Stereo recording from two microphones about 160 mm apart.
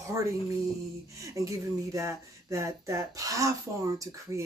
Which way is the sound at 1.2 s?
20° right (ahead or behind).